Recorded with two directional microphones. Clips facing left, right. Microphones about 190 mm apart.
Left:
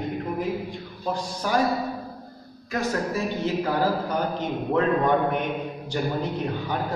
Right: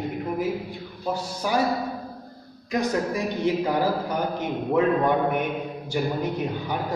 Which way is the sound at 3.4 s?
15° right (ahead or behind).